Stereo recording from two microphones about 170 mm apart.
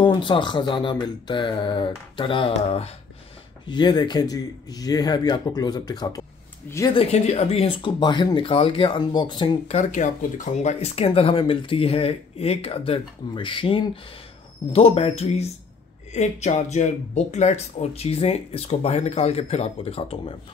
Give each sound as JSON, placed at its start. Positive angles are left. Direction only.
{"t": 0.0, "sound": "speech", "side_deg": 30}
{"t": 6.9, "sound": "speech", "side_deg": 35}
{"t": 9.8, "sound": "speech", "side_deg": 45}